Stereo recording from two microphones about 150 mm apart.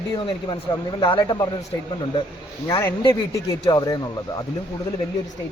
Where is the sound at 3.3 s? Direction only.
25° left (ahead or behind).